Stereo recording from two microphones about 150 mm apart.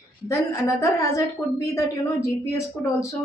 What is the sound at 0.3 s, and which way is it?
A woman's voice, 20° left (ahead or behind).